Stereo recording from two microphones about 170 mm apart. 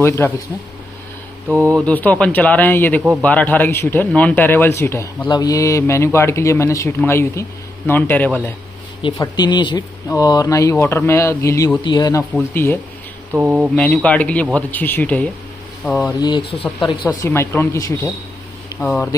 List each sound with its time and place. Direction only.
0.2 s a man's voice: 15° left (ahead or behind)
1.7 s a man's voice: 5° left (ahead or behind)
9.2 s speech: 25° left (ahead or behind)
12.2 s a man's voice: 10° left (ahead or behind)
13.3 s speech: 10° right (ahead or behind)
13.7 s a man's voice: 5° left (ahead or behind)
16.1 s a man's voice: 25° left (ahead or behind)
18.7 s vehicle: 25° left (ahead or behind)